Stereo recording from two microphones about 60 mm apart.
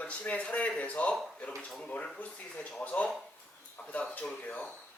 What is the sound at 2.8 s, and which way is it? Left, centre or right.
Speech, left.